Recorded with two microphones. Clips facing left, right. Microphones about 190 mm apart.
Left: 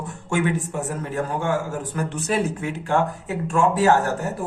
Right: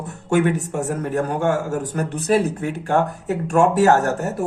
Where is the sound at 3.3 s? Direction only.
70° right (ahead or behind).